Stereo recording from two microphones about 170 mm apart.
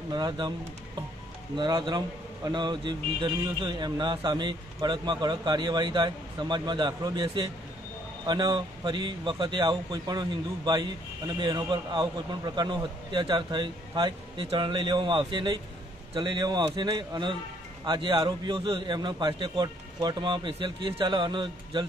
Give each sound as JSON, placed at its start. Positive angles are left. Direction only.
{"t": 0.1, "sound": "speech", "side_deg": -25}
{"t": 1.6, "sound": "speech", "side_deg": -25}